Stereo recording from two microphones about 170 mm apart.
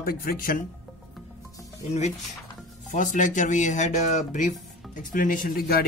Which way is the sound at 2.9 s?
50° left (ahead or behind).